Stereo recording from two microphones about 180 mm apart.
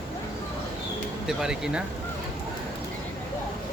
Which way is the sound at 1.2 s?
5° right (ahead or behind).